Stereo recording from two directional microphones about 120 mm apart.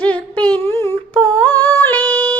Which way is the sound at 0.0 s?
10° left (ahead or behind).